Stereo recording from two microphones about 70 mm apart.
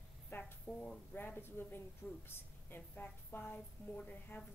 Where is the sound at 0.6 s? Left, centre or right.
Centre.